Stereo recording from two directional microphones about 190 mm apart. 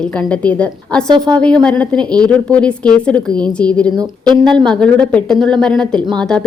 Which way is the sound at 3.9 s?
20° right (ahead or behind).